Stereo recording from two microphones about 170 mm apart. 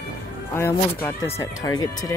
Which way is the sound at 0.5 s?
15° left (ahead or behind).